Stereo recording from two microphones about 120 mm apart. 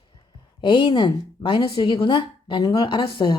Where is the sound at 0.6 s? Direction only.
40° left (ahead or behind).